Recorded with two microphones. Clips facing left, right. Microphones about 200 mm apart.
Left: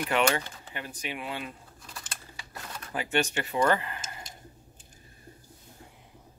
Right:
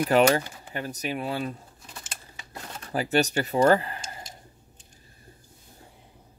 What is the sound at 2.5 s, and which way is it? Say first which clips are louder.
Typewriter: right 5 dB; 35° right (ahead or behind).